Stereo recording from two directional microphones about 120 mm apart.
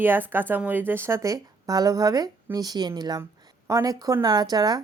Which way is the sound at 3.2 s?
25° right (ahead or behind).